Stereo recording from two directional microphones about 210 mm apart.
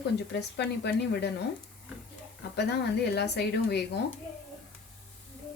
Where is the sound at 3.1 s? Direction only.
50° left (ahead or behind).